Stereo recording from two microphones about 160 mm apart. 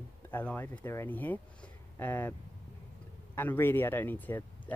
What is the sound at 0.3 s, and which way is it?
Speech, 10° left (ahead or behind).